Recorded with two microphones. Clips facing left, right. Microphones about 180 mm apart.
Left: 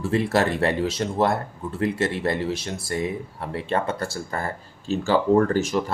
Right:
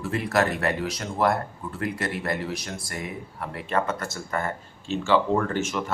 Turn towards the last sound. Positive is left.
turn(degrees=35)  # may be behind; listen again after turning